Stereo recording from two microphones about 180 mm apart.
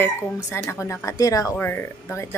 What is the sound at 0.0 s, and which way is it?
Speech, 15° left (ahead or behind).